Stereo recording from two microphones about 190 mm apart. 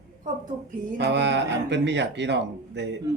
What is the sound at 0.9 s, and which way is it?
Speech, 65° right (ahead or behind).